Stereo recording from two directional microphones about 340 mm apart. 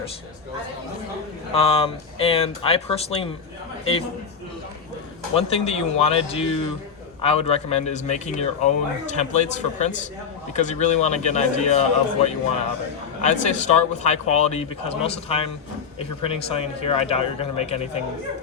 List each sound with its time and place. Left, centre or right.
1.5 s speech: centre
5.3 s a man's voice: centre